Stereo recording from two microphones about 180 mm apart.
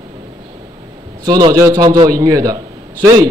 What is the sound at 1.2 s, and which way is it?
A man's voice, 20° right (ahead or behind).